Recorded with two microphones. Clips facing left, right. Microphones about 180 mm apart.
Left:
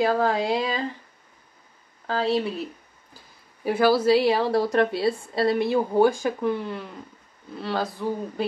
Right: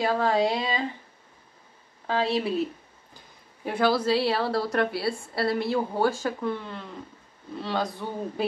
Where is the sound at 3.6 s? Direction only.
5° left (ahead or behind).